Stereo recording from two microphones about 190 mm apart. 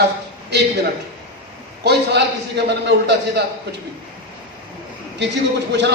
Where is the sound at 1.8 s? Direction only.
60° right (ahead or behind).